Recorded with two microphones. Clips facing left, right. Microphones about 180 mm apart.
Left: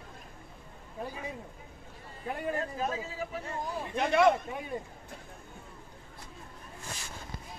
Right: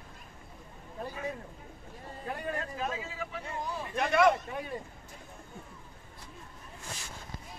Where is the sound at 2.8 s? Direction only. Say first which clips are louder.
Left 2 dB; 40° left (ahead or behind).